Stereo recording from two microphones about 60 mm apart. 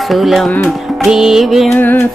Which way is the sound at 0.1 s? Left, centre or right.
Centre.